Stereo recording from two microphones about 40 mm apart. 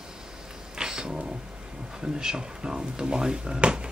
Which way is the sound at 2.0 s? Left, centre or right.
Centre.